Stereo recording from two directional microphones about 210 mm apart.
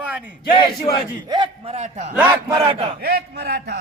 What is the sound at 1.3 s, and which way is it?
A man's voice, 25° right (ahead or behind).